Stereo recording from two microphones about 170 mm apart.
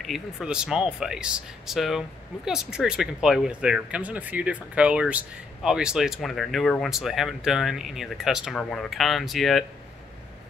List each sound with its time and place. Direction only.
0.0 s speech: centre (ahead or behind)